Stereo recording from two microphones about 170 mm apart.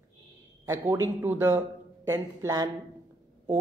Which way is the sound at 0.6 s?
15° right (ahead or behind).